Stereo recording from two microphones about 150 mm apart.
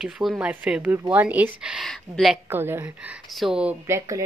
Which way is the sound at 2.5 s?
15° right (ahead or behind).